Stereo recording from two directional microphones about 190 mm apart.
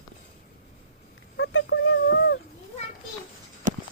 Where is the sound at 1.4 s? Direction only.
85° left; by 2.4 s 65° left (ahead or behind).